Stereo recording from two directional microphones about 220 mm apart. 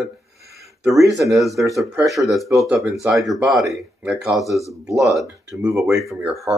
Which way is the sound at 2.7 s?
15° right (ahead or behind).